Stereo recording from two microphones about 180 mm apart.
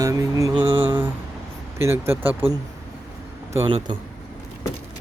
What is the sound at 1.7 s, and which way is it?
Speech, 15° right (ahead or behind).